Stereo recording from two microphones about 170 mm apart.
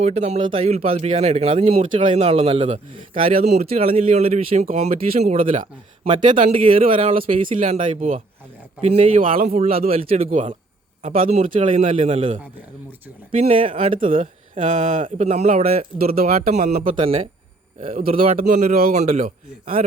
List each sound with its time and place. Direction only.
0.0 s speech: 40° right (ahead or behind)
16.1 s speech: 60° right (ahead or behind)
16.5 s speech: 40° right (ahead or behind)
18.3 s a man's voice: 45° right (ahead or behind)